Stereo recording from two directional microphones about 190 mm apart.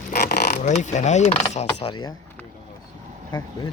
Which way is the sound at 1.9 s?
25° left (ahead or behind).